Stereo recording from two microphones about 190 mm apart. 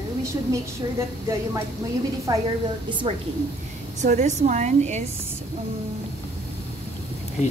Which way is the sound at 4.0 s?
40° right (ahead or behind).